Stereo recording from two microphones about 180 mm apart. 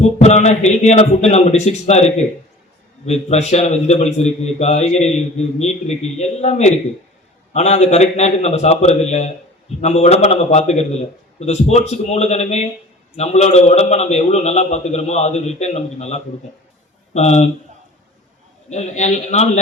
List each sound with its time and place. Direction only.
0.2 s a man's voice: 35° left (ahead or behind)
18.7 s a man's voice: 40° left (ahead or behind)